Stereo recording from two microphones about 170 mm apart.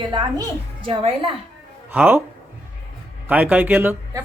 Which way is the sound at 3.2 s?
10° right (ahead or behind).